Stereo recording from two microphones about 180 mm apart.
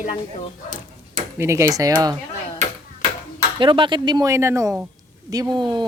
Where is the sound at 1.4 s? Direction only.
15° right (ahead or behind).